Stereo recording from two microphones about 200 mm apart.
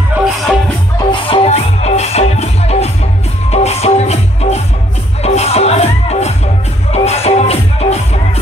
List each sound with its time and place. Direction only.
0.9 s music: 25° left (ahead or behind)